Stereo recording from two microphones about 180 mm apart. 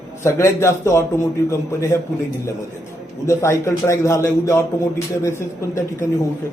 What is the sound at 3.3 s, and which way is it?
A man's voice, 15° left (ahead or behind).